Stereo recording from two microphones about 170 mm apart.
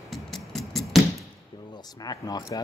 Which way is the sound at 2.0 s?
25° left (ahead or behind).